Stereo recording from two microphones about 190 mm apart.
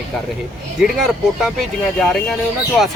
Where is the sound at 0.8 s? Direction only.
Centre (ahead or behind).